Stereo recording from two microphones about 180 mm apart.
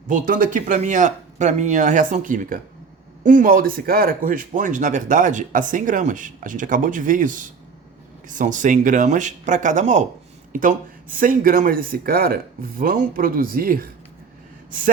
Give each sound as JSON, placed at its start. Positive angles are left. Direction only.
{"t": 0.1, "sound": "speech", "side_deg": -50}